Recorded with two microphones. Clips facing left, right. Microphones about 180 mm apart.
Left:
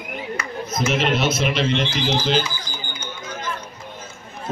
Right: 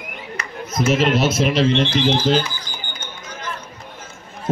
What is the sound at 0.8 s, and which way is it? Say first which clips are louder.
Speech: right 4 dB; 40° right (ahead or behind).